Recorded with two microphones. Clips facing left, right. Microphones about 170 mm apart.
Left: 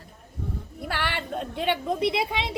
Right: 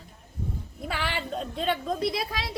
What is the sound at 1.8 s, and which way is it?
Speech, 20° left (ahead or behind).